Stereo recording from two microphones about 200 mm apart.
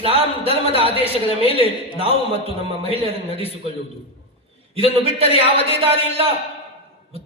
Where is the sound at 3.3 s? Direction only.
30° left (ahead or behind).